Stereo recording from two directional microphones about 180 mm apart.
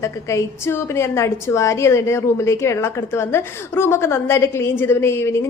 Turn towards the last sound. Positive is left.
turn(degrees=15)  # may be behind; listen again after turning